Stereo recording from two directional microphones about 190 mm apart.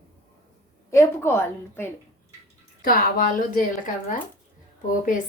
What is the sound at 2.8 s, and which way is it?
Speech, 50° left (ahead or behind).